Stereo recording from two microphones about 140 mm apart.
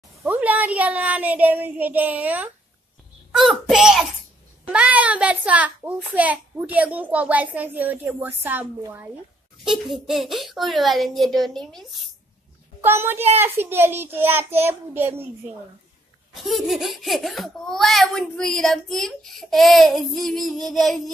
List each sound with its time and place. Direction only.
0.2 s a child's voice: 10° right (ahead or behind)
9.7 s a child's voice: centre (ahead or behind)
12.8 s a child's voice: 15° right (ahead or behind)
16.3 s a child's voice: centre (ahead or behind)